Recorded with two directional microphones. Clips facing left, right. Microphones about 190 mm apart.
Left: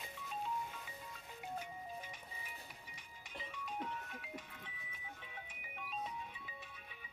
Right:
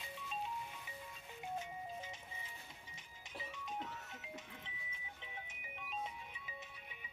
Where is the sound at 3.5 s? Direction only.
20° right (ahead or behind).